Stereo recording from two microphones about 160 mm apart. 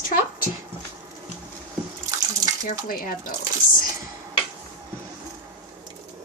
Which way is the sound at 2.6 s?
65° left (ahead or behind).